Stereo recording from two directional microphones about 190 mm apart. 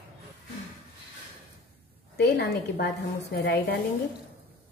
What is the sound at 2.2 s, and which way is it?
A woman's voice, 60° left (ahead or behind).